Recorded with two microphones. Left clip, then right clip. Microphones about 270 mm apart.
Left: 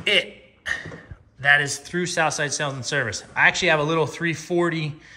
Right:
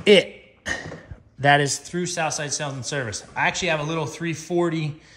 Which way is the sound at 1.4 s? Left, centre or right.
Right.